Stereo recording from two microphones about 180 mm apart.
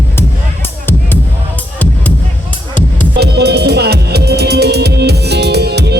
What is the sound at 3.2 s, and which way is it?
Music, 65° right (ahead or behind).